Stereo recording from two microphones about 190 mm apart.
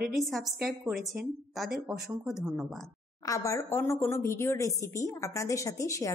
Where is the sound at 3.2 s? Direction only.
15° left (ahead or behind).